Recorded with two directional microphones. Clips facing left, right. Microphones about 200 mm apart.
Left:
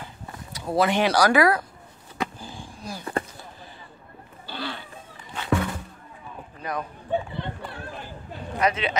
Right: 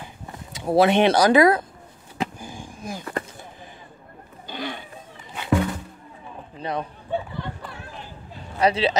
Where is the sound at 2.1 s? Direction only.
15° right (ahead or behind).